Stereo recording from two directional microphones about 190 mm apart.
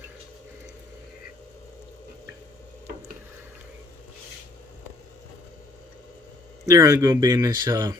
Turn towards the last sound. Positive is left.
turn(degrees=-15)  # may be behind; listen again after turning